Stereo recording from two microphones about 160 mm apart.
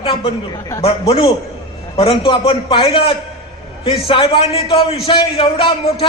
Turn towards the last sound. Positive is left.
turn(degrees=35)  # may be behind; listen again after turning